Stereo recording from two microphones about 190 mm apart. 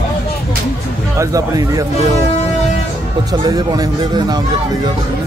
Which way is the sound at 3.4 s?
20° right (ahead or behind).